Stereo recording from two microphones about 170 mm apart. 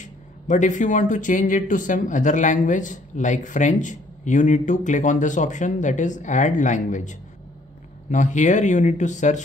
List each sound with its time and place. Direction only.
0.0 s speech: 45° left (ahead or behind)